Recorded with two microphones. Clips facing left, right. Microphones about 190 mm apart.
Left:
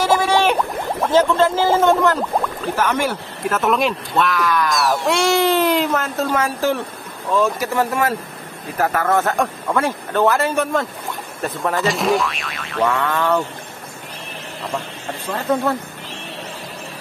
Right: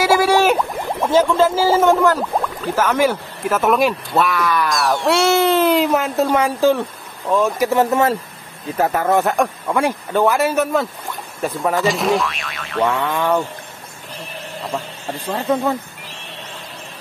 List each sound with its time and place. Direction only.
0.0 s a sound: 10° right (ahead or behind)
2.9 s a man's voice: 10° right (ahead or behind)
5.9 s a man's voice: 15° right (ahead or behind); by 12.9 s centre (ahead or behind)
12.9 s a man's voice: 15° right (ahead or behind)